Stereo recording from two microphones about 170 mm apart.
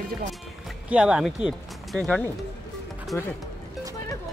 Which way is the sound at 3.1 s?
20° left (ahead or behind).